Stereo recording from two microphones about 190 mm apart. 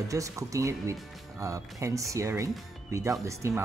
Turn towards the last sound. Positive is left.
turn(degrees=-15)  # may be behind; listen again after turning